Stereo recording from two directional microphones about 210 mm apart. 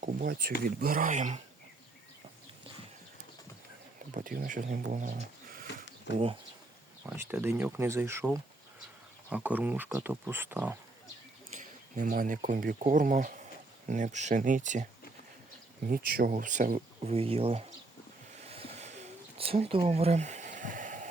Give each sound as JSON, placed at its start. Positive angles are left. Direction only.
{"t": 0.0, "sound": "speech", "side_deg": -45}
{"t": 4.1, "sound": "speech", "side_deg": -40}
{"t": 6.1, "sound": "speech", "side_deg": 55}
{"t": 7.0, "sound": "speech", "side_deg": -10}
{"t": 11.5, "sound": "speech", "side_deg": -40}
{"t": 18.3, "sound": "a sound", "side_deg": -30}